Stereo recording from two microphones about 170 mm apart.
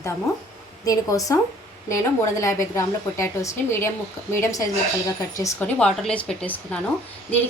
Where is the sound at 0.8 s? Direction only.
20° left (ahead or behind).